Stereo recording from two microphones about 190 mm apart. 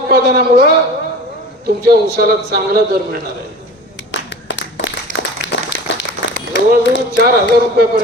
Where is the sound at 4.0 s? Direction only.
70° left (ahead or behind).